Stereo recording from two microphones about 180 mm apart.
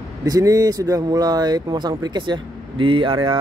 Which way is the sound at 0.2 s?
20° right (ahead or behind).